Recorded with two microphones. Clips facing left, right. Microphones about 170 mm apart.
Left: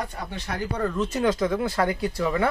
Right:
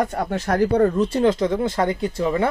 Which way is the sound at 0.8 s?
35° right (ahead or behind).